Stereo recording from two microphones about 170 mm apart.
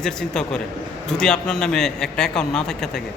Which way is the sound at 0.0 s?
5° left (ahead or behind).